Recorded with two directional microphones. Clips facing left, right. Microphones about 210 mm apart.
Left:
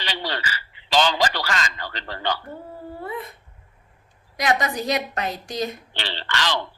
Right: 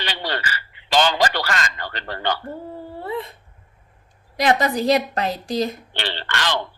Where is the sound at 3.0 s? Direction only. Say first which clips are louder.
Right 4 dB; 30° right (ahead or behind).